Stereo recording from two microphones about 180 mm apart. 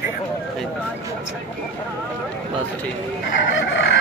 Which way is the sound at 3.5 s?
80° left.